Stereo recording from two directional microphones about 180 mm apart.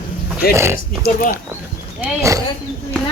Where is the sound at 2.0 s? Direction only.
15° right (ahead or behind).